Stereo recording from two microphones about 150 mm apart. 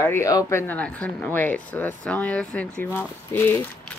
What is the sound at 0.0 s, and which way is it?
Speech, 20° left (ahead or behind).